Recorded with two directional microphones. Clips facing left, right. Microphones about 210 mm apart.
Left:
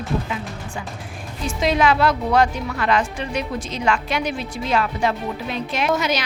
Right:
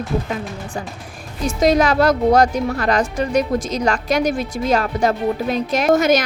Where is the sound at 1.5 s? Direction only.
40° right (ahead or behind).